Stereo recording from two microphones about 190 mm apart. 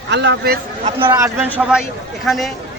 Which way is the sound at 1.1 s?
15° right (ahead or behind).